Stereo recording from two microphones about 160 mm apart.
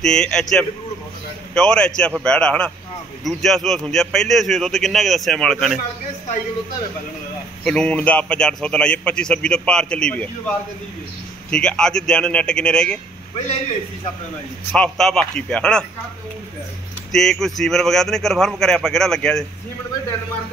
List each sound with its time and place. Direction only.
0.0 s a man's voice: 5° left (ahead or behind)
7.6 s a man's voice: 5° left (ahead or behind)
11.5 s a man's voice: 5° left (ahead or behind)
14.7 s a man's voice: 5° left (ahead or behind)
17.1 s a man's voice: centre (ahead or behind)